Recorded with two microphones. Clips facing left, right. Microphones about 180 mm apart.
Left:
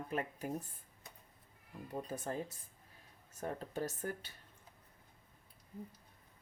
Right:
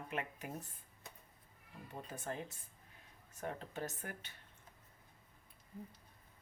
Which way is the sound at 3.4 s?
40° left (ahead or behind).